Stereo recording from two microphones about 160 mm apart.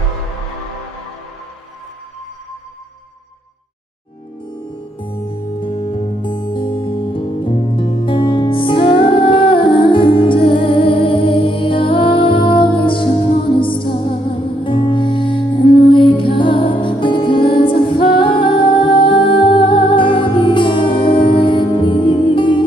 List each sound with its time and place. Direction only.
5.6 s music: 30° left (ahead or behind)